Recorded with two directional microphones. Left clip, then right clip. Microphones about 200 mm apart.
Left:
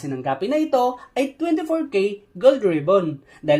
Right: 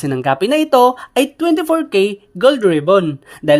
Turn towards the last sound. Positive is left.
turn(degrees=-30)  # may be behind; listen again after turning